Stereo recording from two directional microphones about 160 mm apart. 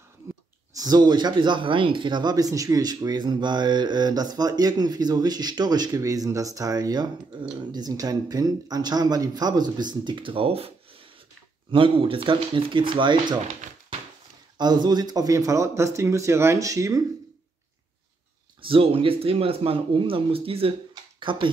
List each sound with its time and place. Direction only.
0.7 s speech: 25° right (ahead or behind)
11.7 s speech: 35° right (ahead or behind)
14.6 s speech: 25° right (ahead or behind)
18.6 s speech: 35° right (ahead or behind)
20.9 s a sound: 30° right (ahead or behind)